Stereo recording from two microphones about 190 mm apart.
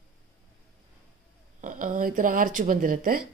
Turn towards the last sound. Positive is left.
turn(degrees=-45)  # may be behind; listen again after turning